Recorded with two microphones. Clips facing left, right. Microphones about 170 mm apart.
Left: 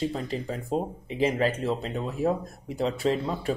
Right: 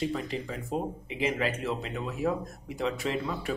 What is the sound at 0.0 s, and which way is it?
Speech, 35° left (ahead or behind).